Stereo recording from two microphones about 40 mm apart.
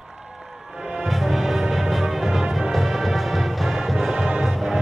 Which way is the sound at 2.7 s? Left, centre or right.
Centre.